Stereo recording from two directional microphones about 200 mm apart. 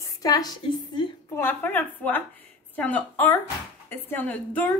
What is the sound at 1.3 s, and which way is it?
A woman's voice, 10° left (ahead or behind).